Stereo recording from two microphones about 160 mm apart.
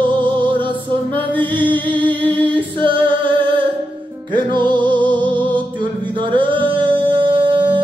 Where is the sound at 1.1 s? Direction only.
30° right (ahead or behind).